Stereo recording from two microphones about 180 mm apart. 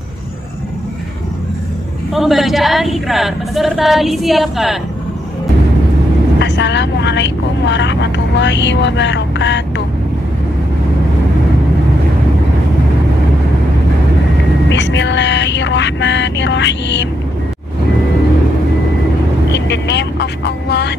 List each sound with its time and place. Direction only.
2.1 s a woman's voice: centre (ahead or behind)
6.4 s vehicle: 75° left (ahead or behind)
14.7 s music: 80° left
19.5 s speech: 70° left (ahead or behind)